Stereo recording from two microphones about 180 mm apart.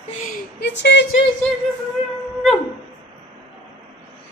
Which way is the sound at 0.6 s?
75° left (ahead or behind).